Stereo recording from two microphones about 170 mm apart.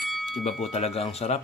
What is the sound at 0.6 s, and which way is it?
Speech, 40° left (ahead or behind).